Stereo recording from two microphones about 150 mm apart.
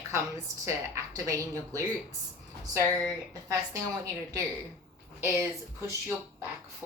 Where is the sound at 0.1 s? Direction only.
20° right (ahead or behind).